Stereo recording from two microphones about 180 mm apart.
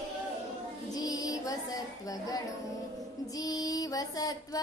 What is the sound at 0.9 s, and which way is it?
Speech, 20° left (ahead or behind).